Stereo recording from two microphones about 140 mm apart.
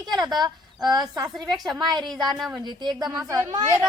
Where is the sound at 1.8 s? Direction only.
30° right (ahead or behind).